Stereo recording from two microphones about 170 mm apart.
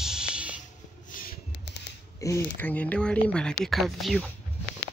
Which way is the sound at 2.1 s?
15° left (ahead or behind).